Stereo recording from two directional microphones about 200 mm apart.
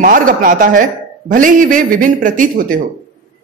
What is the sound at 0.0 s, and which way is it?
A woman's voice, 45° right (ahead or behind).